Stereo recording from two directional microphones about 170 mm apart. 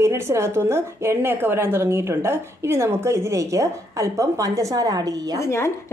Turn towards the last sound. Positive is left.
turn(degrees=15)  # may be behind; listen again after turning